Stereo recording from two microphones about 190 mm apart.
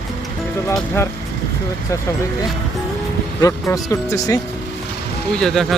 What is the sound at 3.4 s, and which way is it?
Speech, 15° left (ahead or behind).